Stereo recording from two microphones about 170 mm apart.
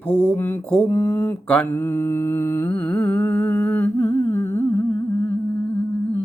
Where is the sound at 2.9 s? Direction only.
10° left (ahead or behind).